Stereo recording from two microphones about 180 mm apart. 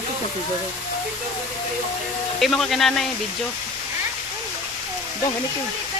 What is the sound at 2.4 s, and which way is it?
Speech, centre (ahead or behind).